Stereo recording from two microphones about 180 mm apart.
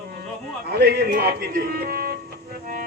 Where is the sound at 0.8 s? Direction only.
60° right (ahead or behind).